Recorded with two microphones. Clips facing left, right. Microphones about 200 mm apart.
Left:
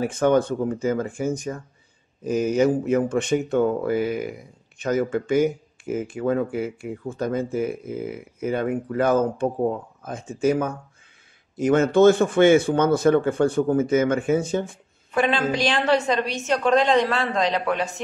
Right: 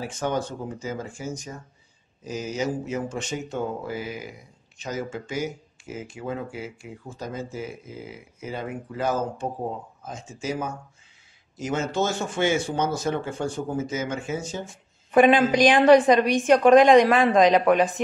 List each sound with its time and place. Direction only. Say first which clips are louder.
0.0 s speech: left 8 dB; 55° left (ahead or behind)
15.1 s a woman's voice: right 5 dB; 15° right (ahead or behind)